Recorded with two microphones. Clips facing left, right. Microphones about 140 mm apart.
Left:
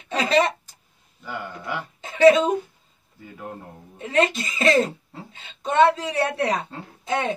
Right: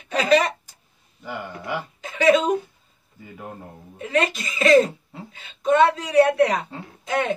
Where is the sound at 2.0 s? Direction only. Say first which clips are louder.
Left 3 dB; 25° left (ahead or behind).